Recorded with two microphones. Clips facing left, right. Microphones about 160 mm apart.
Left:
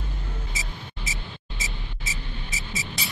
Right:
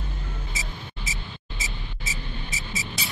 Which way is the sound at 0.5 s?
Centre (ahead or behind).